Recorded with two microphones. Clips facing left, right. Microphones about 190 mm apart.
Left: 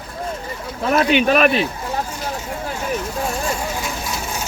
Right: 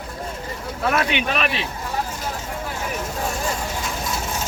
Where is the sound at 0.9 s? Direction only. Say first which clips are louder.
Left 10 dB; 40° left (ahead or behind).